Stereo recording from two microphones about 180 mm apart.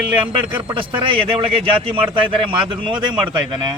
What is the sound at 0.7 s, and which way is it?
Speech, 30° right (ahead or behind).